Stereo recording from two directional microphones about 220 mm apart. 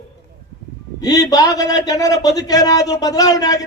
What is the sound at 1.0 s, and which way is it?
Speech, 15° left (ahead or behind).